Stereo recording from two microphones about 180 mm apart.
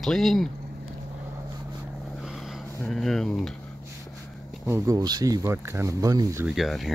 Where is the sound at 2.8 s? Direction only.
Centre (ahead or behind).